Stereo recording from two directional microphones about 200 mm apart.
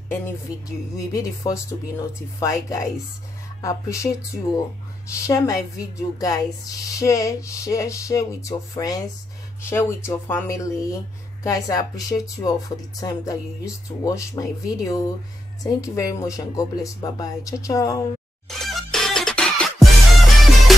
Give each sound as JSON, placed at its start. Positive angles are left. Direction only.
{"t": 0.7, "sound": "speech", "side_deg": 15}
{"t": 18.6, "sound": "music", "side_deg": 0}